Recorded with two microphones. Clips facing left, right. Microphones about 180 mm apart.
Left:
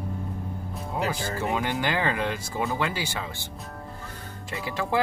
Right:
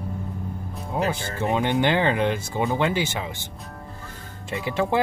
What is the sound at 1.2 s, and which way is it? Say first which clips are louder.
Speech: right 3 dB; 25° right (ahead or behind).